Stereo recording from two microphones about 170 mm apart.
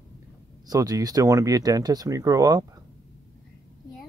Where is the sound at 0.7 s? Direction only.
20° right (ahead or behind).